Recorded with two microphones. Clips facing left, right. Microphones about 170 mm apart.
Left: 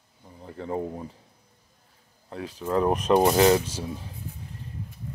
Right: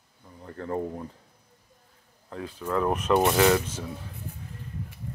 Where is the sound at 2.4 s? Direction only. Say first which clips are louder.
Left 3 dB; 35° left (ahead or behind).